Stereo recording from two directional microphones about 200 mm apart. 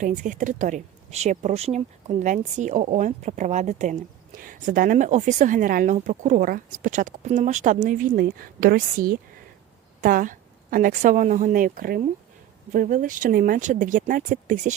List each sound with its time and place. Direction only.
0.0 s a woman's voice: 40° right (ahead or behind)